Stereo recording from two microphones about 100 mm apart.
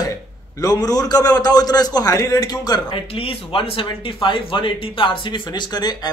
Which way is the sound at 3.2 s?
70° left (ahead or behind).